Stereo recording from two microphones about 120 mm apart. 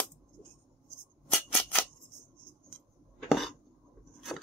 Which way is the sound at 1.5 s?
10° left (ahead or behind).